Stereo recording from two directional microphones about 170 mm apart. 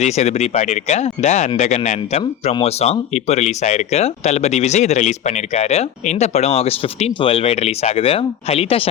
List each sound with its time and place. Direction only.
0.0 s speech: 40° left (ahead or behind)